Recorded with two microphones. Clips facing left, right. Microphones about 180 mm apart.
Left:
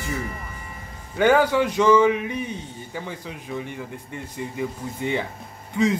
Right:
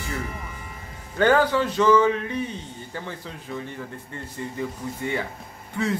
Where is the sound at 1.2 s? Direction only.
10° left (ahead or behind).